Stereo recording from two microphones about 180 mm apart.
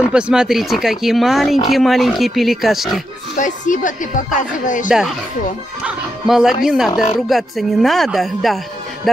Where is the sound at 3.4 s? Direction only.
45° left (ahead or behind).